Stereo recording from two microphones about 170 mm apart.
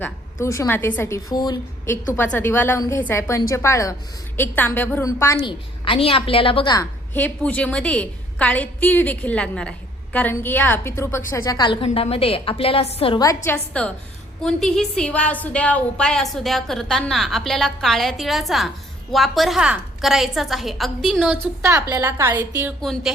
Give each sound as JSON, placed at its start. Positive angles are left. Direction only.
{"t": 0.0, "sound": "a woman's voice", "side_deg": 15}
{"t": 2.1, "sound": "a woman's voice", "side_deg": 10}
{"t": 5.5, "sound": "a woman's voice", "side_deg": 30}
{"t": 7.1, "sound": "a woman's voice", "side_deg": 10}
{"t": 13.2, "sound": "a woman's voice", "side_deg": 15}
{"t": 21.3, "sound": "a woman's voice", "side_deg": -15}
{"t": 22.8, "sound": "a woman's voice", "side_deg": 0}